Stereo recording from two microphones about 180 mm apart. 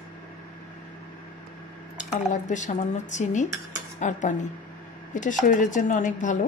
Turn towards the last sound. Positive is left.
turn(degrees=45)  # may be behind; listen again after turning